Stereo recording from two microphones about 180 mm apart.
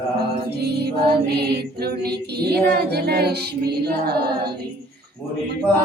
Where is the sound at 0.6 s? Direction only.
65° right (ahead or behind).